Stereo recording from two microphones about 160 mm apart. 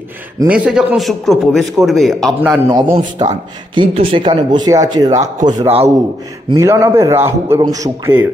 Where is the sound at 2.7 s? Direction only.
30° right (ahead or behind).